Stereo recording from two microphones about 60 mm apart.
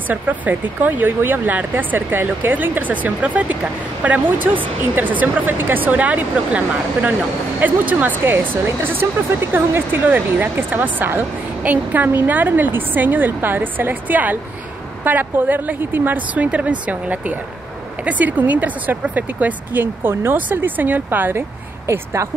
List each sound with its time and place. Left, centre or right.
0.1 s speech: right
8.3 s speech: right
16.4 s speech: right